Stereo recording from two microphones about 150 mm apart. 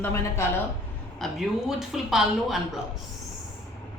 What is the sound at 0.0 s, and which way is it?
Speech, 15° left (ahead or behind).